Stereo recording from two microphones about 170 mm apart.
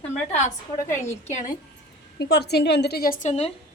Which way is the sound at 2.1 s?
75° left (ahead or behind).